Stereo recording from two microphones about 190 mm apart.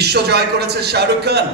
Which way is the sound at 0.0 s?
60° right (ahead or behind).